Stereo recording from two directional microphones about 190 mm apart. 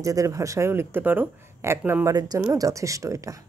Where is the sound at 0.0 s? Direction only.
15° right (ahead or behind).